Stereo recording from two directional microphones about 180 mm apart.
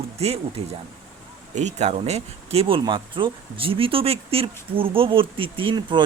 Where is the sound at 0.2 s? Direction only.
35° right (ahead or behind).